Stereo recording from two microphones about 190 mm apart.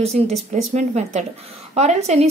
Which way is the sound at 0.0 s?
35° right (ahead or behind).